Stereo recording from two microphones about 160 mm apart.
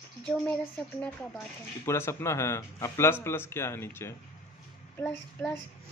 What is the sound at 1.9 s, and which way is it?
A man's voice, 15° left (ahead or behind).